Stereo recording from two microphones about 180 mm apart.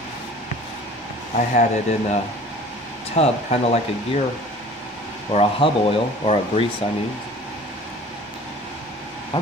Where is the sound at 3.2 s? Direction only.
35° left (ahead or behind).